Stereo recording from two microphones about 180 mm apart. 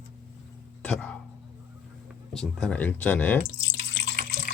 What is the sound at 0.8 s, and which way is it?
Speech, 5° left (ahead or behind).